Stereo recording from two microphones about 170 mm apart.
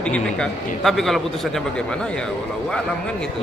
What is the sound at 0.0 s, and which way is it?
A man's voice, 5° left (ahead or behind).